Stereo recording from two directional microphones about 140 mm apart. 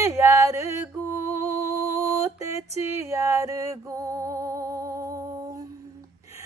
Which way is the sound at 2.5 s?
20° right (ahead or behind).